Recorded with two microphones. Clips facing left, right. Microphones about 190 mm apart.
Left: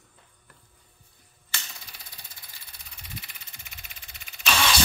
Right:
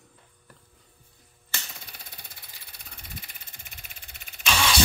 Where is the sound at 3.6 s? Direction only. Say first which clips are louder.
Even; 50° right (ahead or behind).